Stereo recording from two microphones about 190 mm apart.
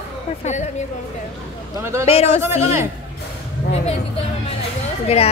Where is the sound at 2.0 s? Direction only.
35° left (ahead or behind).